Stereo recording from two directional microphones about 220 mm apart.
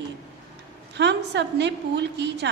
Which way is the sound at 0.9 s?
50° right (ahead or behind).